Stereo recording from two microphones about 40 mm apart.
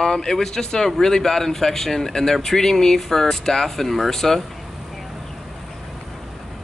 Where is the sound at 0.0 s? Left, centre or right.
Centre.